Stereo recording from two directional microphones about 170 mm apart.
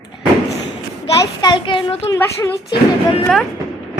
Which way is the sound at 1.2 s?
25° left (ahead or behind).